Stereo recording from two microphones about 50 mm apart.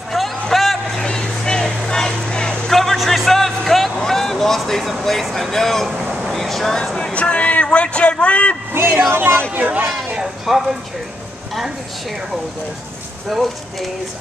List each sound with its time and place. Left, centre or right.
0.1 s vehicle: centre
1.0 s vehicle: centre
2.7 s a sound: centre
3.3 s music: centre
3.9 s vehicle: centre
5.2 s speech: centre
5.9 s a sound: centre
6.3 s vehicle: centre
7.0 s a sound: left
9.1 s speech: right
9.5 s speech: right
10.4 s speech: centre
13.3 s speech: centre